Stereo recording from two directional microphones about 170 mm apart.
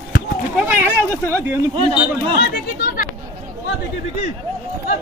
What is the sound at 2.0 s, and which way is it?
Speech, 65° left (ahead or behind).